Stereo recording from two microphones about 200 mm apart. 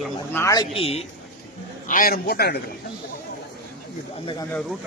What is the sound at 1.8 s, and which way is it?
Speech, 45° left (ahead or behind).